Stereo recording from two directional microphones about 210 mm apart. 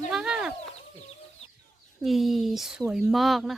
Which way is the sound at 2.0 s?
Centre (ahead or behind).